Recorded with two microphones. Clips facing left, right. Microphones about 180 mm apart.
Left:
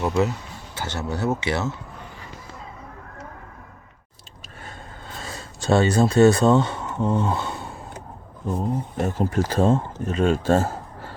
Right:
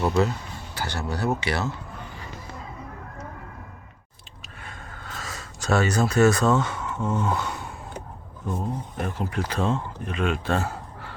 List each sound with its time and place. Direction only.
0.0 s speech: 20° left (ahead or behind)
4.6 s a sound: 35° left (ahead or behind)
5.1 s speech: 30° left (ahead or behind)
8.5 s speech: 40° left (ahead or behind)